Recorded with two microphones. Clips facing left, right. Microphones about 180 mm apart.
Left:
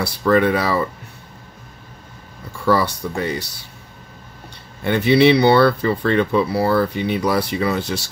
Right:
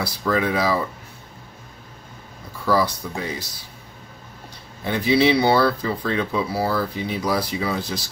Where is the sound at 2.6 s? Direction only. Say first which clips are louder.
Left 3 dB; 70° left (ahead or behind).